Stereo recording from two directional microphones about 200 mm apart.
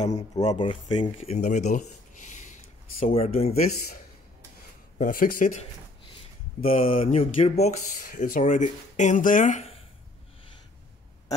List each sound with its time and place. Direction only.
0.5 s speech: 25° left (ahead or behind)
4.9 s speech: 45° left (ahead or behind)
6.6 s speech: 30° left (ahead or behind)